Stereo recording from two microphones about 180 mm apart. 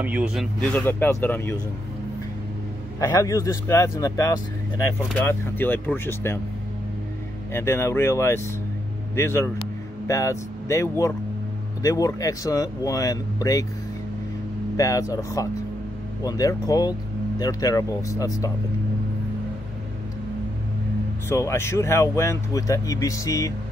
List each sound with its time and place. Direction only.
0.0 s speech: 5° right (ahead or behind); by 1.6 s 10° left (ahead or behind)
3.0 s speech: 20° left (ahead or behind)
7.5 s speech: 15° left (ahead or behind)
14.8 s speech: 20° left (ahead or behind)
21.3 s speech: 15° left (ahead or behind)